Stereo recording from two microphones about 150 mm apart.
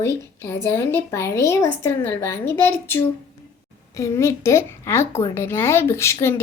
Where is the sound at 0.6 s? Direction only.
15° left (ahead or behind).